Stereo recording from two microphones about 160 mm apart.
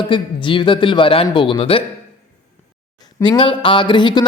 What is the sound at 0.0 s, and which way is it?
A man's voice, 30° left (ahead or behind).